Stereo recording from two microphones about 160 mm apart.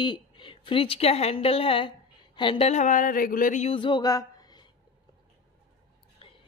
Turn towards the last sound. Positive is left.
turn(degrees=35)  # may be behind; listen again after turning